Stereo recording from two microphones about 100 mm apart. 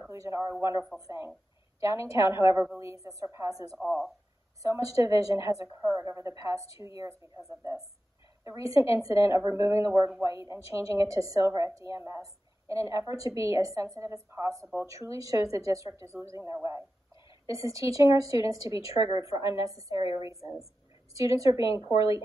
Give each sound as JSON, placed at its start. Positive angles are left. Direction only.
{"t": 0.1, "sound": "a woman's voice", "side_deg": -30}